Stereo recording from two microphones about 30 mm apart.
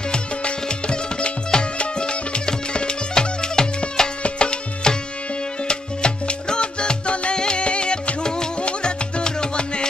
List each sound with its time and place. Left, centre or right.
0.1 s music: left
4.2 s music: left
8.5 s music: left